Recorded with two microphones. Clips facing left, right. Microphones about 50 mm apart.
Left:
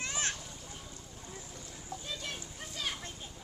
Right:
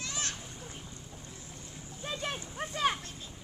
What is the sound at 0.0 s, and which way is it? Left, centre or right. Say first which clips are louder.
Splash: left 2 dB; left.